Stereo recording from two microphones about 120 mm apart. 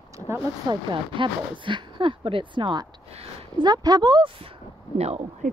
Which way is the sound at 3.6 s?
35° right (ahead or behind).